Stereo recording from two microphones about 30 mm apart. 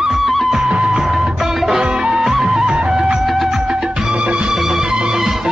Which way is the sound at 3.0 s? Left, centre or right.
Centre.